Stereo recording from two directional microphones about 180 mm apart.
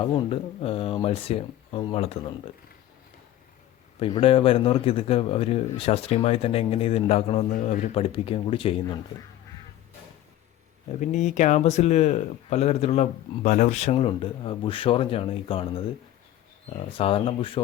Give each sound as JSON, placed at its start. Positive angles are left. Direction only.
{"t": 0.0, "sound": "speech", "side_deg": 30}
{"t": 4.0, "sound": "speech", "side_deg": 30}
{"t": 7.5, "sound": "speech", "side_deg": 50}
{"t": 7.9, "sound": "speech", "side_deg": 30}
{"t": 11.0, "sound": "speech", "side_deg": 40}